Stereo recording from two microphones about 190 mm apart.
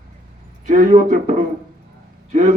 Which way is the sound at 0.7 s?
40° right (ahead or behind).